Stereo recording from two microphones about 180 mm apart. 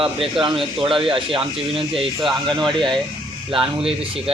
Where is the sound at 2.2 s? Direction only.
Centre (ahead or behind).